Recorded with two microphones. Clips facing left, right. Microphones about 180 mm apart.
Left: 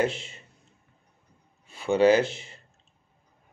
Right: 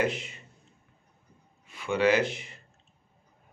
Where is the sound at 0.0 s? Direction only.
30° left (ahead or behind).